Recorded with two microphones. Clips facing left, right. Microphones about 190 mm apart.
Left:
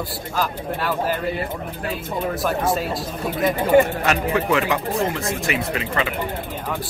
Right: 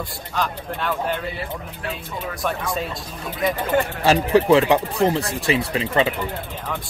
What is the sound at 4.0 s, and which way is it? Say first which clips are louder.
Speech: right 4 dB; 30° right (ahead or behind).